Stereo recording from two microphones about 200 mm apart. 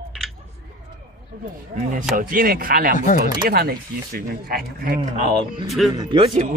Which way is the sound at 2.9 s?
40° left (ahead or behind).